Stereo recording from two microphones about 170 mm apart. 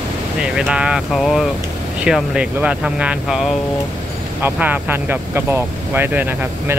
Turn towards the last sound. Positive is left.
turn(degrees=-10)  # may be behind; listen again after turning